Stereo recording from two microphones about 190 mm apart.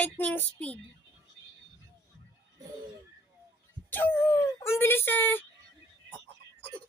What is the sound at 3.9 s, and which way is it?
Speech, 10° left (ahead or behind).